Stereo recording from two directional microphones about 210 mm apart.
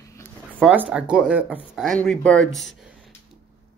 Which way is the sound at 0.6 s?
5° right (ahead or behind).